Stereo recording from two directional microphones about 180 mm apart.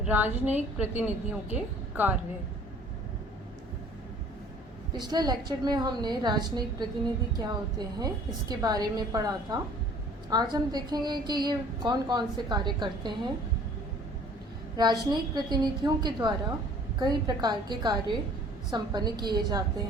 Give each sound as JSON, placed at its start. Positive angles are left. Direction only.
{"t": 0.0, "sound": "a woman's voice", "side_deg": -10}
{"t": 4.9, "sound": "a woman's voice", "side_deg": -25}
{"t": 14.8, "sound": "a woman's voice", "side_deg": -25}